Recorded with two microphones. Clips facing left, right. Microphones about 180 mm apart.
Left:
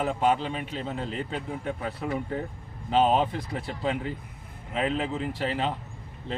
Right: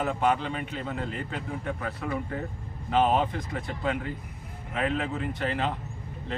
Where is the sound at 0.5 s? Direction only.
25° left (ahead or behind).